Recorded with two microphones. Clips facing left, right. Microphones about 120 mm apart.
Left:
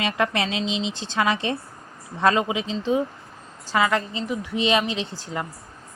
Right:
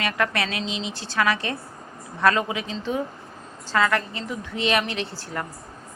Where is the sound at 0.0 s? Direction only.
20° left (ahead or behind).